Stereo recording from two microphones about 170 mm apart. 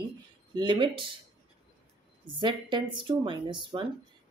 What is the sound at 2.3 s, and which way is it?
Speech, 30° right (ahead or behind).